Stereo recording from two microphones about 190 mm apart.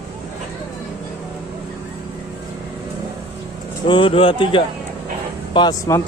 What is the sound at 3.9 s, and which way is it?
Speech, 25° left (ahead or behind).